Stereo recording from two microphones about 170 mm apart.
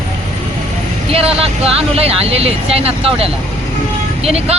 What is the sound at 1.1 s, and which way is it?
Speech, 35° right (ahead or behind).